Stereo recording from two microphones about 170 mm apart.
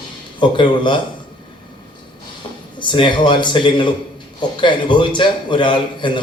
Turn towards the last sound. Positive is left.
turn(degrees=30)  # may be behind; listen again after turning